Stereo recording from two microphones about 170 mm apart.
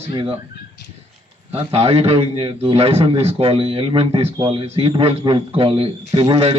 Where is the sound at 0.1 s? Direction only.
30° right (ahead or behind).